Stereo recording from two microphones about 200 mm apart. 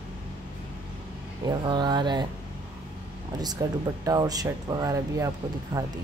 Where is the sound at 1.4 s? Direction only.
20° right (ahead or behind).